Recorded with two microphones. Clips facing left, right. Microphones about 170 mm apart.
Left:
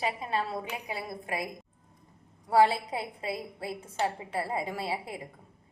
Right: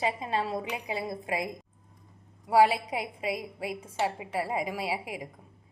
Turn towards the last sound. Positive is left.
turn(degrees=-10)  # may be behind; listen again after turning